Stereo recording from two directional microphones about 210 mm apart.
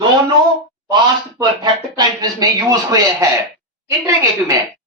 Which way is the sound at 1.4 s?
20° right (ahead or behind).